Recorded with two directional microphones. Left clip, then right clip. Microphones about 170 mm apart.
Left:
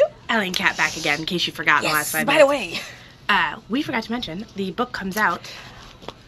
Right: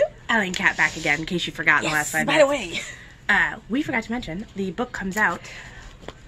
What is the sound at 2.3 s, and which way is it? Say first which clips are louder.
Speech: left 3 dB; 10° left (ahead or behind).